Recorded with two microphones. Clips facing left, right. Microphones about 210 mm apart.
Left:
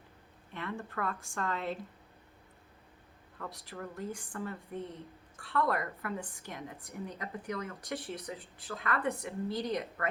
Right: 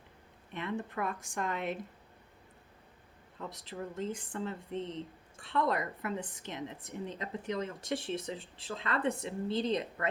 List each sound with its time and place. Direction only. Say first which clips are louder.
0.5 s speech: right 2 dB; 20° right (ahead or behind)
3.3 s speech: right 2 dB; 20° right (ahead or behind)